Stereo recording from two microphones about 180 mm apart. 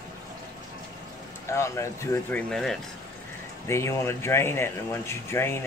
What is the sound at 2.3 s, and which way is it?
Speech, 5° left (ahead or behind).